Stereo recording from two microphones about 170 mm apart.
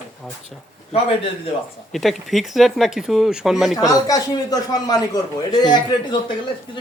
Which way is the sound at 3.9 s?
20° left (ahead or behind).